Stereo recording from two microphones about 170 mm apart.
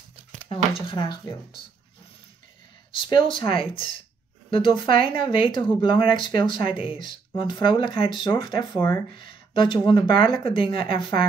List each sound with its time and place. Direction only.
0.5 s speech: 30° left (ahead or behind)
3.0 s speech: 30° left (ahead or behind)